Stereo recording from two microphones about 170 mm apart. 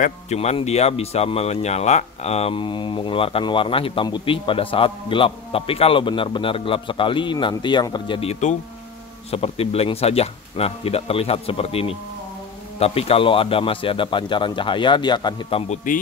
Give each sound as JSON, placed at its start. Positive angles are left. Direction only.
{"t": 0.0, "sound": "a man's voice", "side_deg": 40}
{"t": 15.7, "sound": "a man's voice", "side_deg": 50}